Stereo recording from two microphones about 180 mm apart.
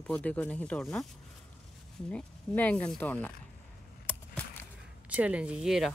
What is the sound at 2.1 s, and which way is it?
Speech, 10° left (ahead or behind).